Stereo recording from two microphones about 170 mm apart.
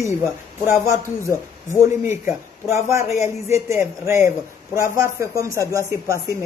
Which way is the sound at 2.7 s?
15° right (ahead or behind).